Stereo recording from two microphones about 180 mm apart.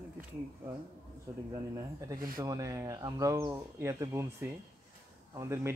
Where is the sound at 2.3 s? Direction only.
20° right (ahead or behind).